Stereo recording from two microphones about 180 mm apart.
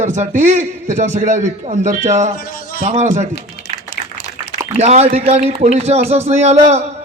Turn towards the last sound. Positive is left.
turn(degrees=-35)  # may be behind; listen again after turning